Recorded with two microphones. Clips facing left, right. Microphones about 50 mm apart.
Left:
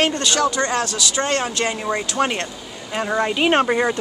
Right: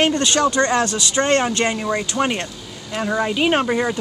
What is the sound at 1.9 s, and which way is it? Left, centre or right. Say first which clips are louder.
Speech: even; centre.